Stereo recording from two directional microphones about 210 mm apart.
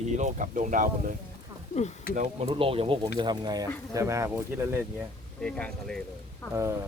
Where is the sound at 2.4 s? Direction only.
25° right (ahead or behind).